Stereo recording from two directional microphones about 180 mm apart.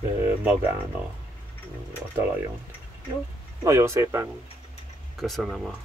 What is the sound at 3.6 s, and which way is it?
Speech, 15° right (ahead or behind).